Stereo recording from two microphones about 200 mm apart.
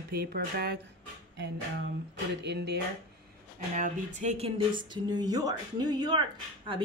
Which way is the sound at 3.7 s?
40° right (ahead or behind).